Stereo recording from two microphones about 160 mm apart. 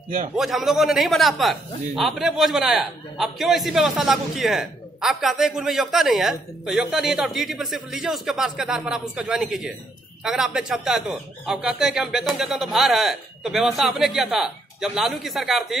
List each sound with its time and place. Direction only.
0.3 s a man's voice: centre (ahead or behind)